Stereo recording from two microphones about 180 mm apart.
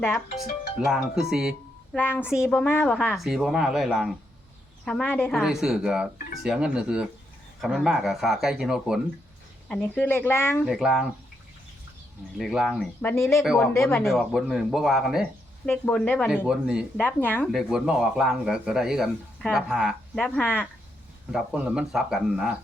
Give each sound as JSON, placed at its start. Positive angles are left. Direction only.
{"t": 0.8, "sound": "speech", "side_deg": 0}
{"t": 2.0, "sound": "speech", "side_deg": 10}
{"t": 2.2, "sound": "speech", "side_deg": -5}
{"t": 2.6, "sound": "speech", "side_deg": 10}
{"t": 5.4, "sound": "speech", "side_deg": 0}
{"t": 10.7, "sound": "speech", "side_deg": 0}
{"t": 12.4, "sound": "speech", "side_deg": 0}
{"t": 13.4, "sound": "speech", "side_deg": 0}
{"t": 13.7, "sound": "speech", "side_deg": 15}
{"t": 14.0, "sound": "speech", "side_deg": 0}
{"t": 17.0, "sound": "speech", "side_deg": 10}
{"t": 17.5, "sound": "speech", "side_deg": 0}
{"t": 21.3, "sound": "speech", "side_deg": -5}